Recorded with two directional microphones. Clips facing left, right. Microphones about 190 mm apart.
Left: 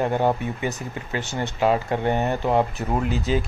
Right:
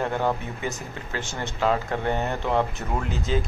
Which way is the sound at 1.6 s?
15° left (ahead or behind).